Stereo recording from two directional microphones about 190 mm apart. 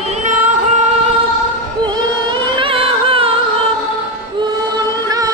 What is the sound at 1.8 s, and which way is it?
Music, 25° right (ahead or behind).